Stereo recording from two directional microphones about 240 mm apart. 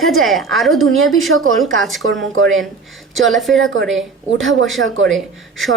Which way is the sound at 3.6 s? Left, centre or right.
Right.